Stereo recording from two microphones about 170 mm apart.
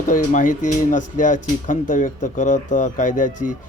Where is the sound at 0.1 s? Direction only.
50° left (ahead or behind).